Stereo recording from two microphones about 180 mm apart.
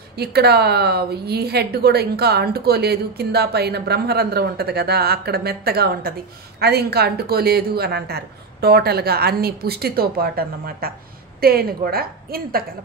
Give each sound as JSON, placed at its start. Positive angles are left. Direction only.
{"t": 0.2, "sound": "a woman's voice", "side_deg": -60}